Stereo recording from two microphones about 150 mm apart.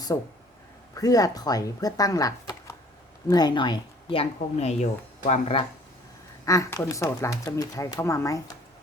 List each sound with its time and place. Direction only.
0.1 s speech: 25° left (ahead or behind); by 5.6 s 45° left (ahead or behind)
6.4 s speech: 20° left (ahead or behind)